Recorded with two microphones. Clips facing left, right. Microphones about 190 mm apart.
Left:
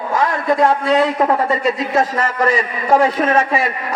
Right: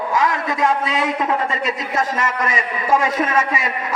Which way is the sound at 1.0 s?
35° left (ahead or behind).